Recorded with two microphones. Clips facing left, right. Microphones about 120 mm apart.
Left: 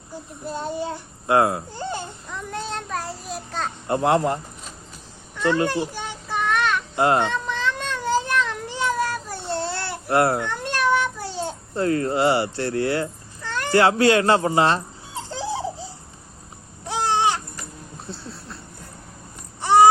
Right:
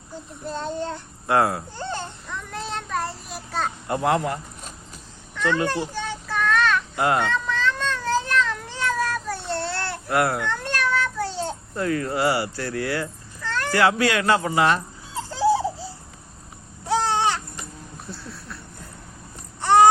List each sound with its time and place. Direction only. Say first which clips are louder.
0.4 s child singing: left 1 dB; 10° left (ahead or behind)
1.3 s speech: left 2 dB; 20° left (ahead or behind)
2.3 s child singing: left 2 dB; centre (ahead or behind)
3.8 s speech: left 4 dB; 30° left (ahead or behind)
5.6 s children playing: left 1 dB; 15° left (ahead or behind)
7.0 s cat: left 3 dB; 25° left (ahead or behind)
10.1 s speech: left 3 dB; 30° left (ahead or behind)
10.5 s child singing: left 3 dB; 15° left (ahead or behind)
11.7 s speech: left 4 dB; 30° left (ahead or behind)
16.9 s babbling: even; 15° left (ahead or behind)
18.1 s a sound: left 1 dB; 25° left (ahead or behind)
19.6 s baby cry: left 1 dB; 10° left (ahead or behind)